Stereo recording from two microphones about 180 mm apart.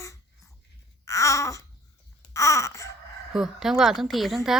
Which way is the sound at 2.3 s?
15° left (ahead or behind).